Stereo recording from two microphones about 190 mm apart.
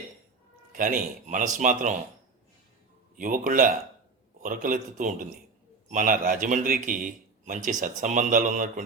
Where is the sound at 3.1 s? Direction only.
45° right (ahead or behind).